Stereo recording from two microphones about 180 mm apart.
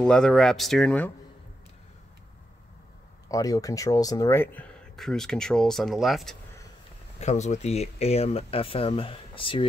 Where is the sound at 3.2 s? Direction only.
20° left (ahead or behind).